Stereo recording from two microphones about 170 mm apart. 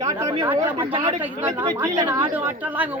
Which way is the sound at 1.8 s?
10° right (ahead or behind).